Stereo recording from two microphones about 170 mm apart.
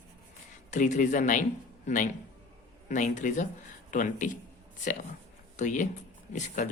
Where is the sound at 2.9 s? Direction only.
45° left (ahead or behind).